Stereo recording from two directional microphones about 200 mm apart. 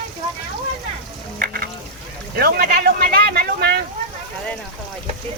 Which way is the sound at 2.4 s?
50° right (ahead or behind).